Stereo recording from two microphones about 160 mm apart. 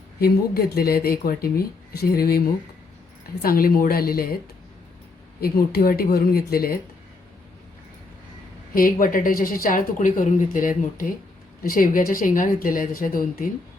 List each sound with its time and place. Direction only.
0.2 s speech: 75° left (ahead or behind)
5.4 s speech: 70° left (ahead or behind)
8.7 s a woman's voice: 60° left (ahead or behind)